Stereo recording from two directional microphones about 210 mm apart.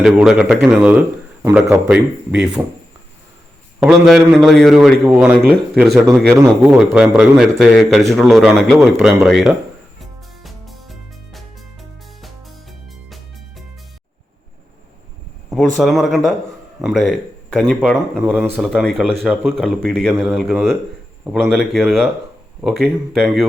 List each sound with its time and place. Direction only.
0.0 s a man's voice: centre (ahead or behind)
3.8 s a man's voice: centre (ahead or behind)
10.4 s music: centre (ahead or behind)
15.8 s a man's voice: centre (ahead or behind)